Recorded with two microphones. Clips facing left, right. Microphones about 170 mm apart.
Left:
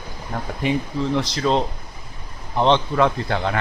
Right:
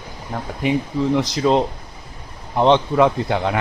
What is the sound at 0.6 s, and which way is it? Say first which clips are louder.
Speech: right 3 dB; 10° right (ahead or behind).